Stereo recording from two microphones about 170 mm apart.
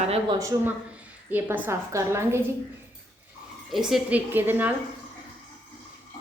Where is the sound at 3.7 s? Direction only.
Centre (ahead or behind).